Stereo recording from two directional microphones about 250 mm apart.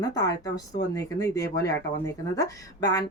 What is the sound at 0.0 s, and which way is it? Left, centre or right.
Speech, centre.